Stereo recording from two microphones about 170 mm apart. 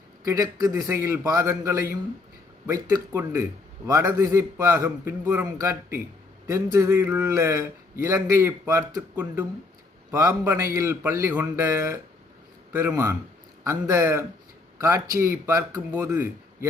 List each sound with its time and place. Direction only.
0.3 s a man's voice: 20° right (ahead or behind)